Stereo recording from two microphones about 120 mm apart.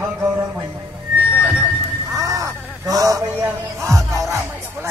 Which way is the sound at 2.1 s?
25° right (ahead or behind).